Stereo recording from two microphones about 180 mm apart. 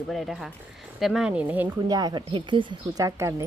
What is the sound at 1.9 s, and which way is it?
Speech, 20° right (ahead or behind).